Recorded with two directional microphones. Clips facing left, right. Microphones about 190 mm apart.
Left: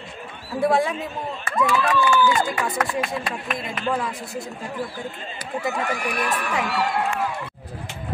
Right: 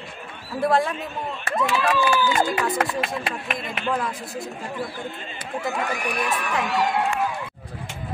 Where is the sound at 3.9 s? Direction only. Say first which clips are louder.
Even; centre (ahead or behind).